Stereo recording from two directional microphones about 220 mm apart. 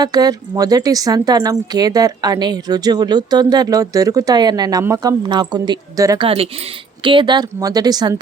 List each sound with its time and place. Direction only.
0.0 s speech: 15° right (ahead or behind)